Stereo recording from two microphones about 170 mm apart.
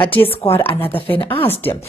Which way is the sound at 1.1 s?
30° left (ahead or behind).